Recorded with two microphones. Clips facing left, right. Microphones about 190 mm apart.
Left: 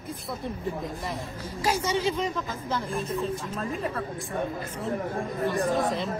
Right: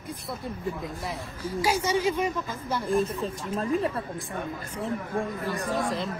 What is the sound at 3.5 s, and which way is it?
Speech, 30° right (ahead or behind).